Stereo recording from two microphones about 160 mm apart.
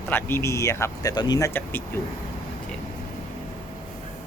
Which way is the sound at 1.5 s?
10° left (ahead or behind).